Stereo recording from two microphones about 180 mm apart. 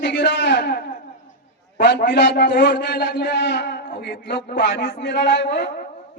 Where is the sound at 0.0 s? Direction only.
75° left (ahead or behind).